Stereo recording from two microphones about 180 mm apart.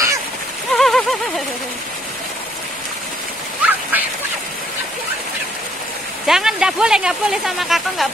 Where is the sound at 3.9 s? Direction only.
10° right (ahead or behind).